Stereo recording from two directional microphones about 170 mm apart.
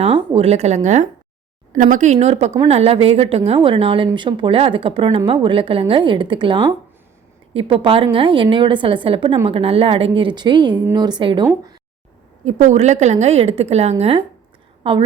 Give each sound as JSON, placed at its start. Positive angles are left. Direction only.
{"t": 0.0, "sound": "a woman's voice", "side_deg": -35}
{"t": 12.5, "sound": "speech", "side_deg": -45}